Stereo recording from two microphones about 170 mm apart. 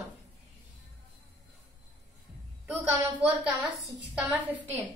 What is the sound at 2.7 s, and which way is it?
A woman's voice, 5° right (ahead or behind).